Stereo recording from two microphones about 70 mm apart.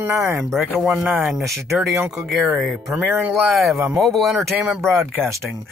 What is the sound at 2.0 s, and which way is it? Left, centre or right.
Speech, centre.